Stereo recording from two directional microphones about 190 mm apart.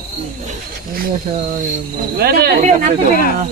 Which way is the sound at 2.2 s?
55° right (ahead or behind).